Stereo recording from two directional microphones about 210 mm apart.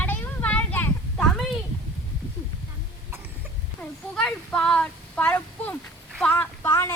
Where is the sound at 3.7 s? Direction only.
5° left (ahead or behind).